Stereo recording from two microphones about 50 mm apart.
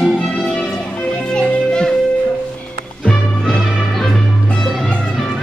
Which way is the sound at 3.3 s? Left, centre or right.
Centre.